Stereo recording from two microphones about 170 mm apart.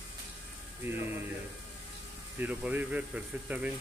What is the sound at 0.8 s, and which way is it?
Speech, 15° right (ahead or behind).